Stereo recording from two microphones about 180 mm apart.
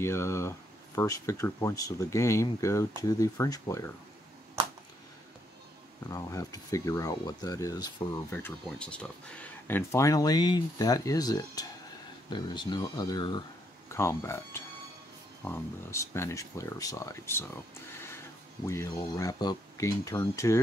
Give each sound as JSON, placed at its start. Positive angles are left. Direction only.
{"t": 0.0, "sound": "speech", "side_deg": 15}
{"t": 6.0, "sound": "speech", "side_deg": 20}
{"t": 18.7, "sound": "speech", "side_deg": 15}